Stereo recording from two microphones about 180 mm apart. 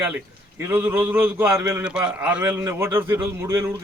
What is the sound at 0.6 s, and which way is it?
A man's voice, 10° right (ahead or behind).